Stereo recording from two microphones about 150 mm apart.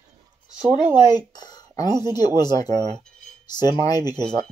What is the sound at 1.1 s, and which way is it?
Speech, 25° left (ahead or behind).